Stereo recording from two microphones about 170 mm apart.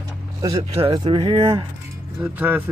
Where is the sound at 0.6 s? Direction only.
30° right (ahead or behind).